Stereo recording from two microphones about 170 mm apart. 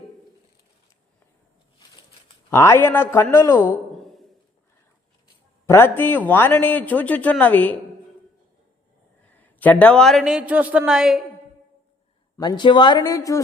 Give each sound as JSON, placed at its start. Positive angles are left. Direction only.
{"t": 2.5, "sound": "a man's voice", "side_deg": 15}
{"t": 3.7, "sound": "a sound", "side_deg": 0}
{"t": 5.6, "sound": "a man's voice", "side_deg": 15}
{"t": 9.2, "sound": "speech", "side_deg": 10}
{"t": 12.4, "sound": "speech", "side_deg": 25}